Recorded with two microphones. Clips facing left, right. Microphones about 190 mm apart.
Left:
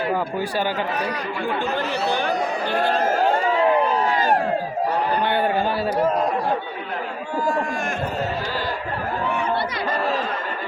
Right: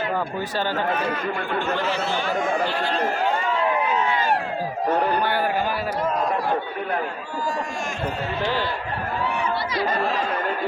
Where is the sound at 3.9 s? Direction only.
40° left (ahead or behind).